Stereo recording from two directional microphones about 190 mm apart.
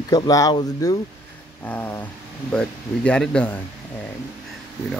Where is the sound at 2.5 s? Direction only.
5° left (ahead or behind).